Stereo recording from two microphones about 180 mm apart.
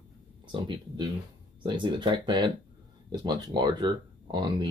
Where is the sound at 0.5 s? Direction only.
25° right (ahead or behind).